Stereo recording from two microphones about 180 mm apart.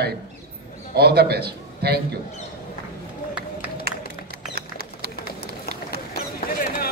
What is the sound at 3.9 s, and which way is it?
Music, 60° right (ahead or behind).